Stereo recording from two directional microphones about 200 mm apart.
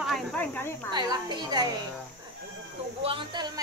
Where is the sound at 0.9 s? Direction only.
20° right (ahead or behind).